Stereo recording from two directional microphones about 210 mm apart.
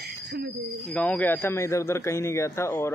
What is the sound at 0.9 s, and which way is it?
A man's voice, 5° left (ahead or behind).